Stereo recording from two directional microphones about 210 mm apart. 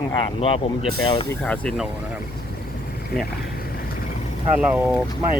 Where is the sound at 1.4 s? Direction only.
5° left (ahead or behind).